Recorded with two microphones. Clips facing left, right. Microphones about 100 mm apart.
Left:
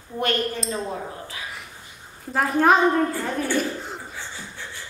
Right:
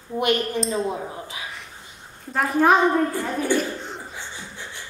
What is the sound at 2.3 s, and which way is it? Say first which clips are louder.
Speech: even; centre (ahead or behind).